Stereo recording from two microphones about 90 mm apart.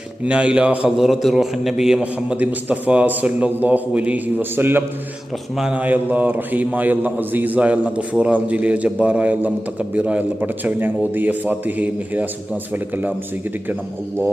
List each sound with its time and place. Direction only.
0.3 s a man's voice: 15° right (ahead or behind)
5.5 s a man's voice: 10° right (ahead or behind)